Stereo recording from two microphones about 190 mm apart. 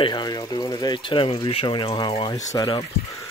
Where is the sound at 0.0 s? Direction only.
25° left (ahead or behind).